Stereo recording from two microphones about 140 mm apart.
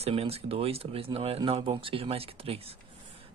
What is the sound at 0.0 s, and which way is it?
Speech, 45° right (ahead or behind).